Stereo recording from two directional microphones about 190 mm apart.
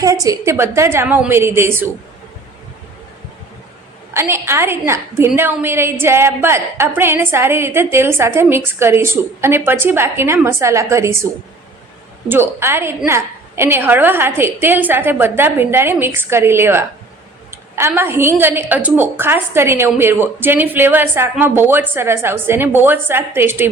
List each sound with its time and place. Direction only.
0.0 s a woman's voice: 15° right (ahead or behind)
4.1 s a woman's voice: 15° right (ahead or behind)
12.3 s a woman's voice: 10° right (ahead or behind)